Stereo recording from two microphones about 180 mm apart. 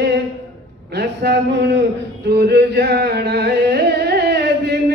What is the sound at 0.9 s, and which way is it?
Speech, 65° right (ahead or behind).